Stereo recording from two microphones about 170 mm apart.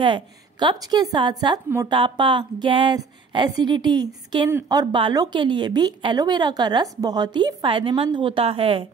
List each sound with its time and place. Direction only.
0.0 s a woman's voice: 30° right (ahead or behind)